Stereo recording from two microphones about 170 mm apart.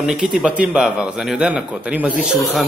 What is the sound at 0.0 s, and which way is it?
A man's voice, 5° right (ahead or behind).